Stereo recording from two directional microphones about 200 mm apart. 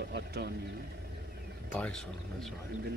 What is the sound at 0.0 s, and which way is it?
Speech, 55° right (ahead or behind).